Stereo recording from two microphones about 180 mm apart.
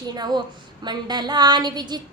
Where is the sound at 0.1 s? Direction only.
25° right (ahead or behind).